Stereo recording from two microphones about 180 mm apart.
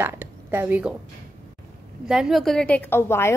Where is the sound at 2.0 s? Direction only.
5° right (ahead or behind); by 3.3 s 15° left (ahead or behind).